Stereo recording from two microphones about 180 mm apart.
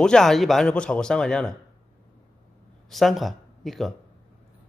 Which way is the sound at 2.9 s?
Centre (ahead or behind).